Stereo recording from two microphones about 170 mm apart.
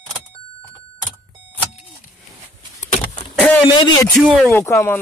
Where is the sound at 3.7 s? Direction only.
25° left (ahead or behind).